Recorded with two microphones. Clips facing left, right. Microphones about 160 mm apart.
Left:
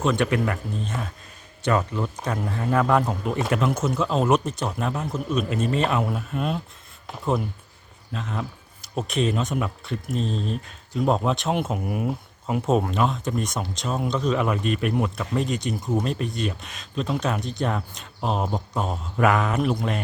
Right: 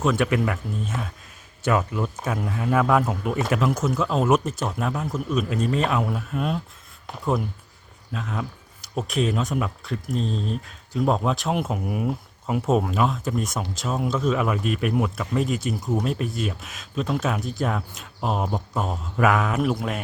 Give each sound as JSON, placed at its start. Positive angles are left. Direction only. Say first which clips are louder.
{"t": 0.0, "sound": "speech", "louder": "even", "side_deg": 0}
{"t": 8.1, "sound": "speech", "louder": "even", "side_deg": 0}